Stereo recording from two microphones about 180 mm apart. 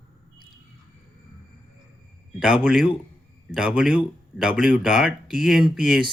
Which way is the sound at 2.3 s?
5° right (ahead or behind).